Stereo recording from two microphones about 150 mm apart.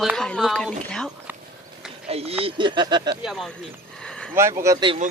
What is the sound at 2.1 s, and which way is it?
Speech, 40° right (ahead or behind).